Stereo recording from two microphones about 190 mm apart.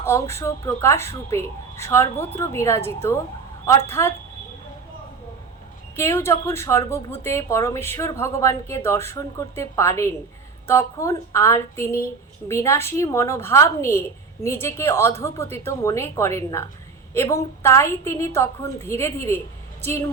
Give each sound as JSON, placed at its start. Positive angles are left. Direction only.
{"t": 0.0, "sound": "speech", "side_deg": 15}
{"t": 6.0, "sound": "a woman's voice", "side_deg": 15}